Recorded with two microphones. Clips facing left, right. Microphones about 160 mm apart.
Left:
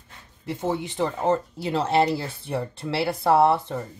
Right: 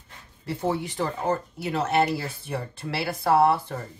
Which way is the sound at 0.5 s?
20° left (ahead or behind).